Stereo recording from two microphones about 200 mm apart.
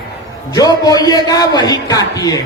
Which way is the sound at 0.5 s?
20° left (ahead or behind).